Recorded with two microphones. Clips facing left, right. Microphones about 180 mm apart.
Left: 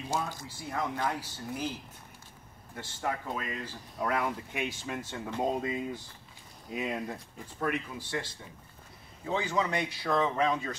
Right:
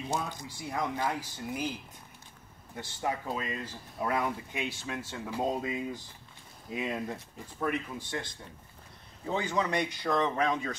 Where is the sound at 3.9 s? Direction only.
25° right (ahead or behind).